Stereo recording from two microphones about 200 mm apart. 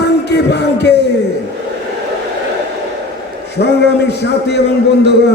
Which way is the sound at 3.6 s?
55° left (ahead or behind).